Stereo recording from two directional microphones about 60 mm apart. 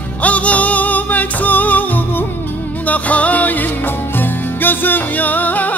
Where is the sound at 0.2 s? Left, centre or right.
Left.